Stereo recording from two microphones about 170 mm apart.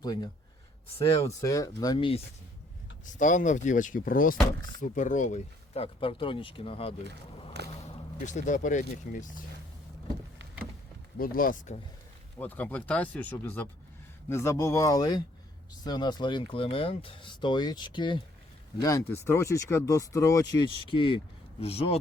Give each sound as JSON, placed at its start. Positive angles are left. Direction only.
{"t": 0.0, "sound": "speech", "side_deg": 25}
{"t": 1.4, "sound": "speech", "side_deg": 20}
{"t": 3.2, "sound": "speech", "side_deg": 50}
{"t": 7.6, "sound": "speech", "side_deg": -75}
{"t": 8.3, "sound": "speech", "side_deg": 45}
{"t": 11.2, "sound": "speech", "side_deg": 55}
{"t": 12.4, "sound": "speech", "side_deg": 10}
{"t": 20.7, "sound": "speech", "side_deg": 30}